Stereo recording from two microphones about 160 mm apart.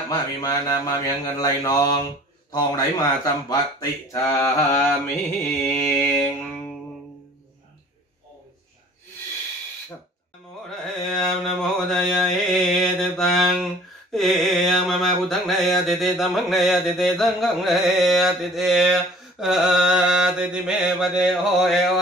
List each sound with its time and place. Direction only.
0.1 s mantra: 25° left (ahead or behind)
5.6 s mantra: 5° left (ahead or behind)
10.7 s mantra: 5° left (ahead or behind)